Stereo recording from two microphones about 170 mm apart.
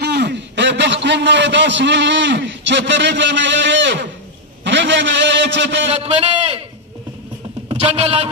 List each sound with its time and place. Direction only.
0.0 s a man's voice: 80° right
5.9 s a man's voice: 35° right (ahead or behind)
7.7 s a man's voice: 40° right (ahead or behind)